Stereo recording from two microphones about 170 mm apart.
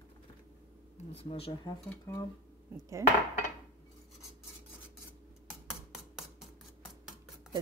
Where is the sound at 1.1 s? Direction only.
35° left (ahead or behind).